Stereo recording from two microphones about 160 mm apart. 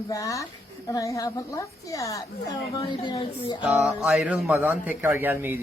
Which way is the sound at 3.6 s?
5° right (ahead or behind).